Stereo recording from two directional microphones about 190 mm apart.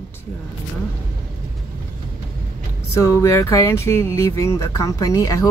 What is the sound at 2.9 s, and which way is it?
Speech, 15° left (ahead or behind).